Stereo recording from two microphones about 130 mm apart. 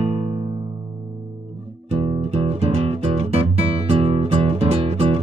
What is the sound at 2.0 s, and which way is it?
Music, 50° right (ahead or behind).